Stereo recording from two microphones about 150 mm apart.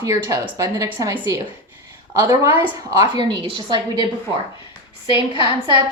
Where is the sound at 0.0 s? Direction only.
20° right (ahead or behind).